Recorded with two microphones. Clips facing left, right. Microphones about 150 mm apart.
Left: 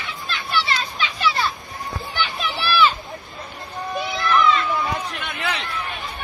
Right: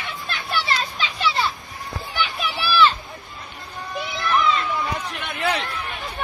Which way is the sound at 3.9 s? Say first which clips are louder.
Left 3 dB; 20° left (ahead or behind).